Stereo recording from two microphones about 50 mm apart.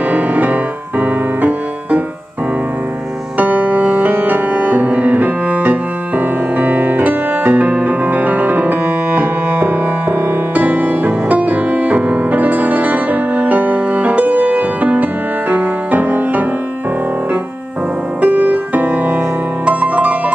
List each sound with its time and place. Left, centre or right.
0.1 s music: right
3.3 s music: right
18.2 s music: right